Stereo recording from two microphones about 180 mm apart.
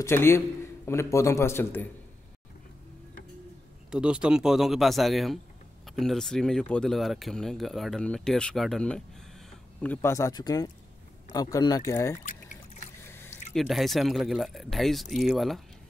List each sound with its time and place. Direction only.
0.0 s a man's voice: 15° left (ahead or behind)
3.9 s speech: 5° right (ahead or behind); by 12.2 s 15° left (ahead or behind)
13.0 s a sound: 15° left (ahead or behind)
13.6 s speech: centre (ahead or behind)